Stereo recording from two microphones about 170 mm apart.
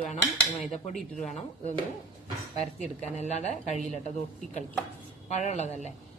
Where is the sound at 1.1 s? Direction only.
Centre (ahead or behind).